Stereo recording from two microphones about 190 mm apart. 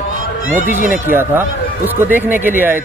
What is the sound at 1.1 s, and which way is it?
Speech, 10° right (ahead or behind).